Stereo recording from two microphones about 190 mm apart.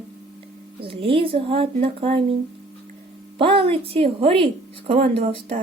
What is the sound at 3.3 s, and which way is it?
Speech, 30° right (ahead or behind).